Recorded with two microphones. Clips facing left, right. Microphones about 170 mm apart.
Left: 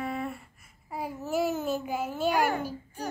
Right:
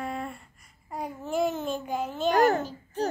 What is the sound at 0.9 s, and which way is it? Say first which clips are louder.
Babbling: even; 5° left (ahead or behind).